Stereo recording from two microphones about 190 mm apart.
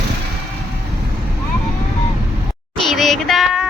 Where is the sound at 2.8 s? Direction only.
Centre (ahead or behind).